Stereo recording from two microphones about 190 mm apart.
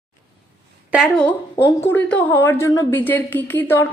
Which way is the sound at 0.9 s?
Centre (ahead or behind).